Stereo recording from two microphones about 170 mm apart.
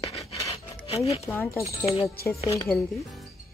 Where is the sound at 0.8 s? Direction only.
35° left (ahead or behind).